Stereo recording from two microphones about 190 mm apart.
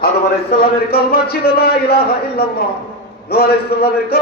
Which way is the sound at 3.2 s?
55° left (ahead or behind).